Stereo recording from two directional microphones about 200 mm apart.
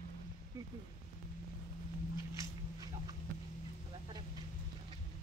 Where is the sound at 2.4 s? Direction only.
20° right (ahead or behind).